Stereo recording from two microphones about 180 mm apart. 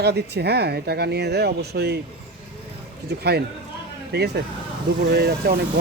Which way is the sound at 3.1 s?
65° right (ahead or behind).